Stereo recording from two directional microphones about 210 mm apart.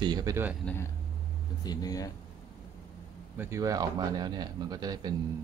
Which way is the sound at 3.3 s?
10° right (ahead or behind).